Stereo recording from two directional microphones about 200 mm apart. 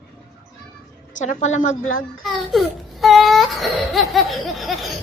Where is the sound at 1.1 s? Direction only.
35° left (ahead or behind).